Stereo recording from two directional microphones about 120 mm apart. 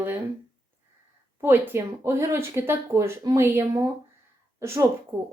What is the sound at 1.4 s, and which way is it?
A woman's voice, 15° right (ahead or behind).